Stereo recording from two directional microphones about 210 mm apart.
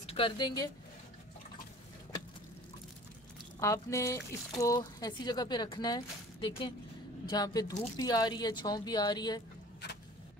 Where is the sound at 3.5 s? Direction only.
15° left (ahead or behind).